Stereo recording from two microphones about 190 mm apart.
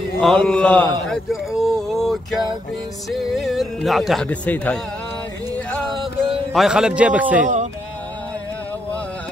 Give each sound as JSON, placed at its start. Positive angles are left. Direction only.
{"t": 0.2, "sound": "speech", "side_deg": 5}
{"t": 6.5, "sound": "speech", "side_deg": 0}
{"t": 7.4, "sound": "speech", "side_deg": -40}